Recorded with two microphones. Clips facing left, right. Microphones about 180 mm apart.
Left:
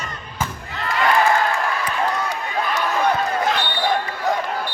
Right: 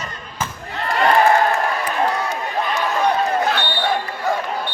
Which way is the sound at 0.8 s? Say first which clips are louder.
Right 3 dB; 45° right (ahead or behind).